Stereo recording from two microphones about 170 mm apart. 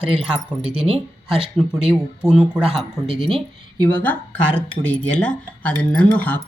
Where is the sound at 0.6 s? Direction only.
35° right (ahead or behind).